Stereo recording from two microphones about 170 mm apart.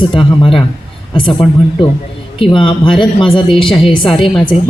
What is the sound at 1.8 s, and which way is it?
A woman's voice, 30° left (ahead or behind).